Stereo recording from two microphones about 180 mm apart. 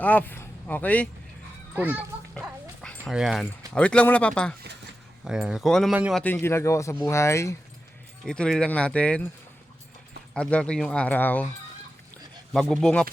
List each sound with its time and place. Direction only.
0.0 s speech: 10° left (ahead or behind)
1.7 s a child's voice: 10° right (ahead or behind)
2.8 s dog: 10° left (ahead or behind)
3.1 s speech: centre (ahead or behind)
6.1 s speech: 10° left (ahead or behind)
8.2 s speech: 5° left (ahead or behind)
10.3 s speech: 5° left (ahead or behind)
12.1 s a sound: centre (ahead or behind)